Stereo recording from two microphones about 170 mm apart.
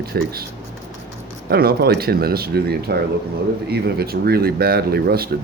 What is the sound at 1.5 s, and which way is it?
Speech, 65° right (ahead or behind).